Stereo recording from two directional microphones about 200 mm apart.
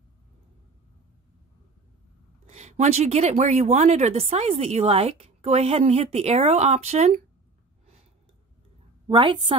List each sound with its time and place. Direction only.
2.5 s a woman's voice: 35° right (ahead or behind)
9.0 s a woman's voice: 25° right (ahead or behind)